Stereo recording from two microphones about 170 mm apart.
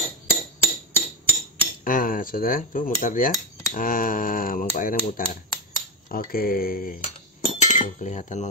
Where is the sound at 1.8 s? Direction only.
55° left (ahead or behind).